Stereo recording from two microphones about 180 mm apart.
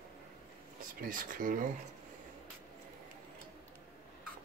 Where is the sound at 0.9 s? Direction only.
50° right (ahead or behind).